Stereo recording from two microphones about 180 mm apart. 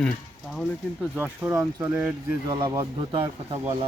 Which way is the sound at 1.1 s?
10° right (ahead or behind).